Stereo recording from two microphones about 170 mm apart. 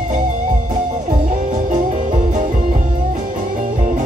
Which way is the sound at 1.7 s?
45° right (ahead or behind).